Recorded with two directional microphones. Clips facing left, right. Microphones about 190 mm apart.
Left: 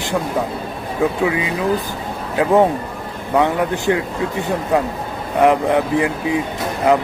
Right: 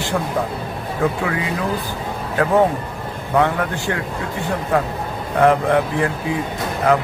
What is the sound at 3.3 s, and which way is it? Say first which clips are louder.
Speech: left 2 dB; 20° left (ahead or behind).